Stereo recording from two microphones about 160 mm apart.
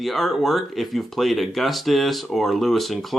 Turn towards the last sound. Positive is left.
turn(degrees=0)  # may be behind; listen again after turning